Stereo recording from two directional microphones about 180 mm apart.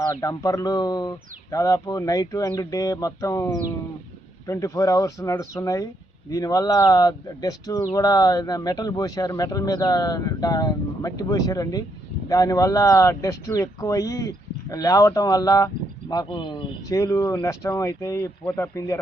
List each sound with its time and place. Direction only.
0.1 s speech: 20° left (ahead or behind)